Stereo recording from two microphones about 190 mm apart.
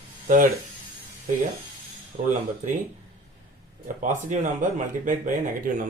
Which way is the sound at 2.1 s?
45° right (ahead or behind).